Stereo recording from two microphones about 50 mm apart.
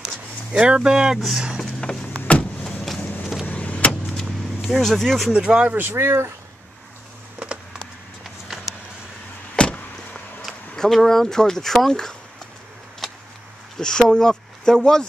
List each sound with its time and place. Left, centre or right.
0.0 s a sound: centre
1.1 s speech: centre
1.8 s a sound: centre
2.6 s vehicle: centre
3.5 s vehicle: left
4.6 s speech: centre
5.3 s speech: centre
5.7 s speech: right
9.6 s vehicle: centre
10.5 s a sound: centre
10.8 s speech: centre
13.0 s vehicle: centre
13.7 s speech: centre